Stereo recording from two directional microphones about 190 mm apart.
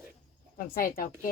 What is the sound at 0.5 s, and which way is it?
Speech, 45° left (ahead or behind).